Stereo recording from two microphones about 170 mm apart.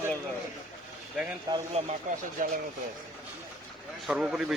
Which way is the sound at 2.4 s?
55° right (ahead or behind).